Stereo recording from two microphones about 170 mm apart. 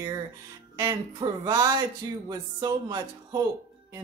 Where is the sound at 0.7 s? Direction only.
20° right (ahead or behind).